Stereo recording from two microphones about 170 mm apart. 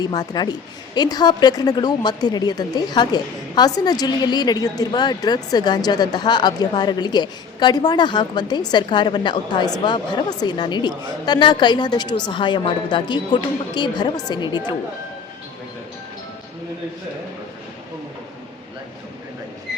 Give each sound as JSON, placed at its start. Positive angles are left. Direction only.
{"t": 0.0, "sound": "speech", "side_deg": 25}